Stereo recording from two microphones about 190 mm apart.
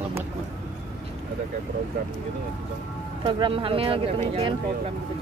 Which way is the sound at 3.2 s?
30° right (ahead or behind).